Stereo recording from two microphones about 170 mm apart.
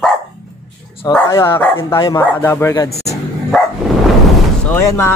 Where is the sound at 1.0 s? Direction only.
15° left (ahead or behind).